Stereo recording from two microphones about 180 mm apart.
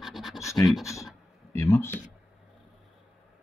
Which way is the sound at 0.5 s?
Centre (ahead or behind).